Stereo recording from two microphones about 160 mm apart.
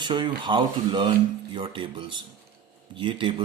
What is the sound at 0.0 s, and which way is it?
Speech, 30° right (ahead or behind).